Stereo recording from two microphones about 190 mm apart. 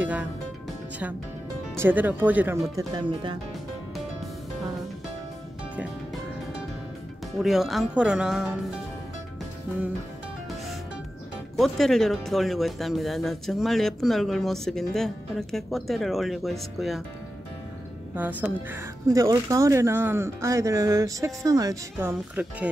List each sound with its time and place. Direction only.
0.0 s music: 5° right (ahead or behind)
1.8 s speech: 10° right (ahead or behind)
7.3 s speech: centre (ahead or behind)
11.5 s speech: centre (ahead or behind)
18.4 s speech: 15° right (ahead or behind)